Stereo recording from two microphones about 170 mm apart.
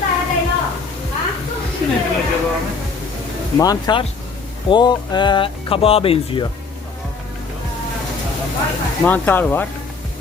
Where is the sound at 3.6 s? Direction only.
20° left (ahead or behind).